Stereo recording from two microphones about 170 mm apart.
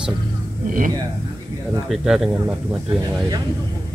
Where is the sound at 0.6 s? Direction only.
50° right (ahead or behind).